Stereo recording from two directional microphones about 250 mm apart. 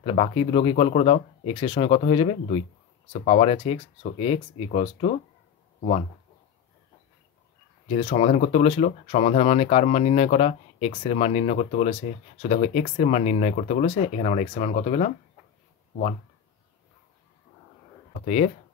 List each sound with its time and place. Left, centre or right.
0.0 s speech: left
7.9 s speech: left
18.2 s speech: left